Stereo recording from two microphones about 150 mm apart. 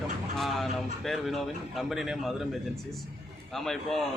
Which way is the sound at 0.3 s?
Centre (ahead or behind).